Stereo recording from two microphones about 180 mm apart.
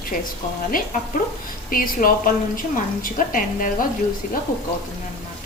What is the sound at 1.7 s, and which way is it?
A woman's voice, 50° left (ahead or behind).